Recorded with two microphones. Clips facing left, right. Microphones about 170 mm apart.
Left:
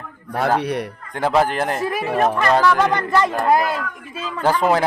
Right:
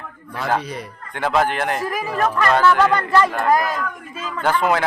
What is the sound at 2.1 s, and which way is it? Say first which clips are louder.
Speech: left 1 dB; 20° left (ahead or behind).